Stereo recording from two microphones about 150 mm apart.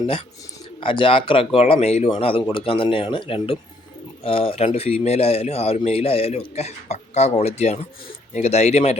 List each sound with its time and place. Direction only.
0.8 s speech: 35° left (ahead or behind)